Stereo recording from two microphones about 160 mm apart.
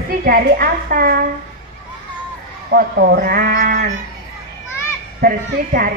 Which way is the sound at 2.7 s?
75° right (ahead or behind).